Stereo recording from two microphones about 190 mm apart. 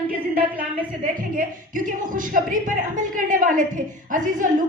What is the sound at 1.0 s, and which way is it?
Speech, 45° right (ahead or behind).